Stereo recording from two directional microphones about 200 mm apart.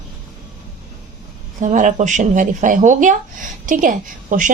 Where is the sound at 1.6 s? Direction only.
40° right (ahead or behind).